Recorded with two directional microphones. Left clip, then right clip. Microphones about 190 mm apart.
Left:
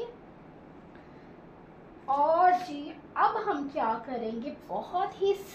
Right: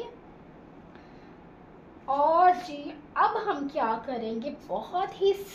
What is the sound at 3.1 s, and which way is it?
A woman's voice, 20° right (ahead or behind).